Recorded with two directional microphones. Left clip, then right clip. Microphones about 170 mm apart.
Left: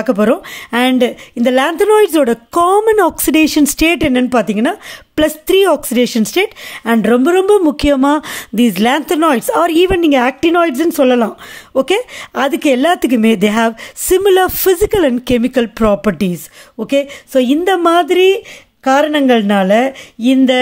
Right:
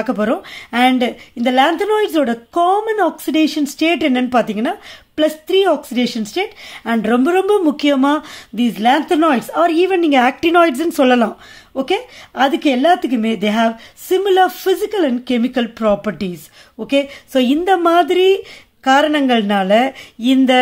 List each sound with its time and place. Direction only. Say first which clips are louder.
0.0 s speech: left 5 dB; 35° left (ahead or behind)
5.1 s a woman's voice: left 3 dB; 55° left (ahead or behind); by 11.3 s 30° left (ahead or behind)
11.7 s a woman's voice: left 5 dB; 50° left (ahead or behind); by 20.5 s 25° left (ahead or behind)